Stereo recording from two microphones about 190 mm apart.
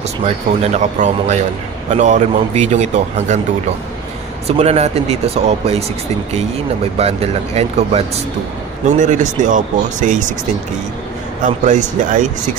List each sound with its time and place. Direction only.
0.7 s a man's voice: 40° right (ahead or behind)
4.5 s a man's voice: 35° right (ahead or behind)
7.0 s a man's voice: 35° right (ahead or behind)
11.4 s speech: 40° right (ahead or behind)